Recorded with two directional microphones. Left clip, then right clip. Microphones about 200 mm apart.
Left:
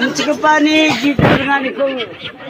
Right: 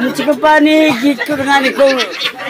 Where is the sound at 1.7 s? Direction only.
55° right (ahead or behind).